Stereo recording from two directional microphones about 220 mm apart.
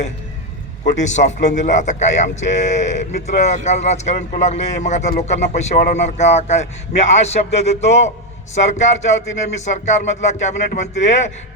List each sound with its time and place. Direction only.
1.0 s a man's voice: 30° left (ahead or behind)